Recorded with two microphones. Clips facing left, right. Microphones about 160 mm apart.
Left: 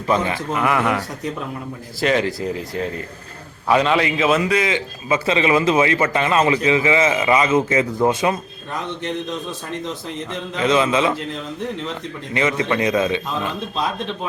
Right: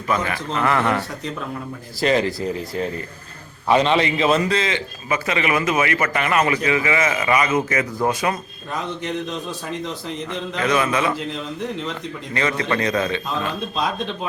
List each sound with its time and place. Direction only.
0.1 s a man's voice: 25° left (ahead or behind); by 2.3 s centre (ahead or behind)
3.7 s a man's voice: 5° left (ahead or behind); by 8.4 s 20° left (ahead or behind)
9.0 s a man's voice: centre (ahead or behind)
10.6 s a man's voice: 20° left (ahead or behind)
12.3 s a man's voice: 20° left (ahead or behind)
13.7 s a man's voice: centre (ahead or behind)